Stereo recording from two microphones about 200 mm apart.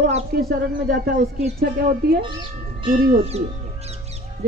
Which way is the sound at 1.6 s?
50° right (ahead or behind).